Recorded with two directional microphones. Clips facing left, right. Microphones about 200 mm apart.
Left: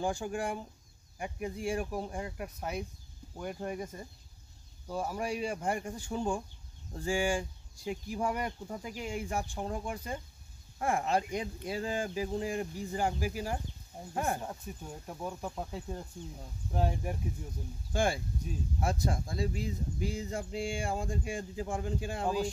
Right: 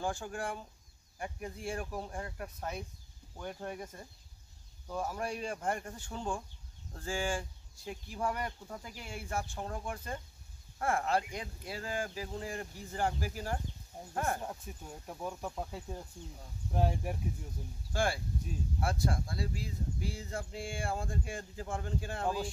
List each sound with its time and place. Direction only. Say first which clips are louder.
0.0 s speech: left 4 dB; 15° left (ahead or behind)
14.4 s speech: left 2 dB; centre (ahead or behind)
17.9 s speech: left 2 dB; 20° left (ahead or behind)